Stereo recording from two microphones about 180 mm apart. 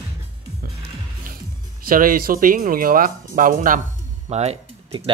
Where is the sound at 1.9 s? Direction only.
50° right (ahead or behind).